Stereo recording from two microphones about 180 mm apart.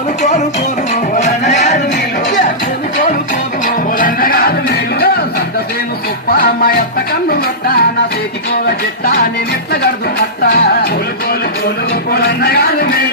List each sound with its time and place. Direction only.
1.1 s music: 40° left (ahead or behind)
3.9 s music: 50° left (ahead or behind)
6.3 s music: 55° left (ahead or behind)
12.1 s a sound: 60° left (ahead or behind)